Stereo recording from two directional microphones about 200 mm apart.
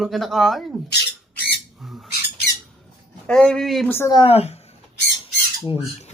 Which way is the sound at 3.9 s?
15° left (ahead or behind).